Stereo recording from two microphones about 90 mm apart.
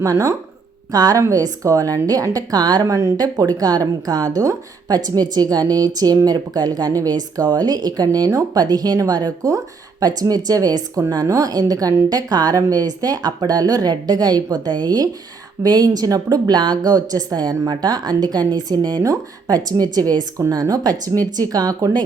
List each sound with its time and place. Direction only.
0.0 s a woman's voice: 40° right (ahead or behind)